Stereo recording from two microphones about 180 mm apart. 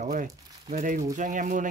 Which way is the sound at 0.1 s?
45° right (ahead or behind).